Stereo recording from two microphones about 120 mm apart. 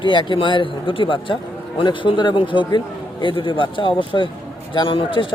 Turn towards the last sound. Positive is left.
turn(degrees=45)  # may be behind; listen again after turning